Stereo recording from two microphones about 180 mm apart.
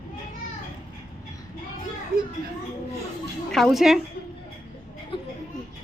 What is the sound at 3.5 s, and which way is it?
Speech, centre (ahead or behind).